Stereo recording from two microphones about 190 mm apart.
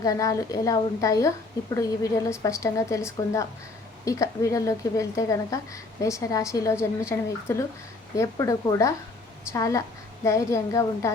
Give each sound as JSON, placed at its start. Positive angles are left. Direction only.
{"t": 0.0, "sound": "a woman's voice", "side_deg": 15}